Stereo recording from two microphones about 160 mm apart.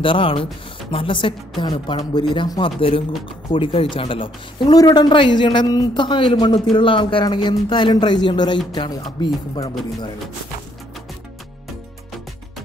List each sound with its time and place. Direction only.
0.0 s a man's voice: 30° left (ahead or behind)